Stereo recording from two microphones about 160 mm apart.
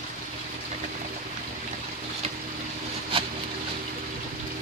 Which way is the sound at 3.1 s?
35° right (ahead or behind).